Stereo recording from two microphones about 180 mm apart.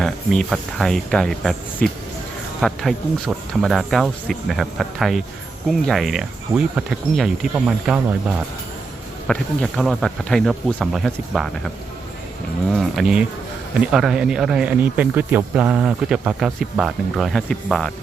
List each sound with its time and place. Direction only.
0.0 s speech: centre (ahead or behind)
9.2 s speech: 5° left (ahead or behind)
12.7 s speech: centre (ahead or behind)